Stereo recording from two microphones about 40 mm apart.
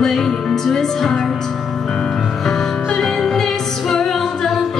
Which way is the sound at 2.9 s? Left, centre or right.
Centre.